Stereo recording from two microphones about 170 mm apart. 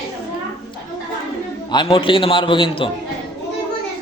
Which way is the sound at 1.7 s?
30° left (ahead or behind).